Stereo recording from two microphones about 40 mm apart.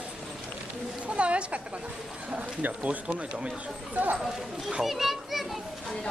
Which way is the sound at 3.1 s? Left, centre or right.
Right.